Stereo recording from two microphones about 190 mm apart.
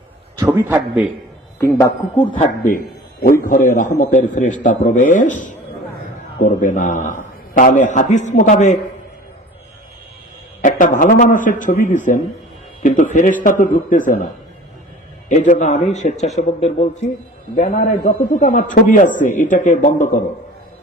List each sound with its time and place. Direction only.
0.3 s a man's voice: 15° right (ahead or behind)
1.5 s speech: 15° left (ahead or behind)
2.6 s a man's voice: 50° left (ahead or behind)
10.6 s a man's voice: 45° left (ahead or behind)
15.3 s a man's voice: 40° left (ahead or behind)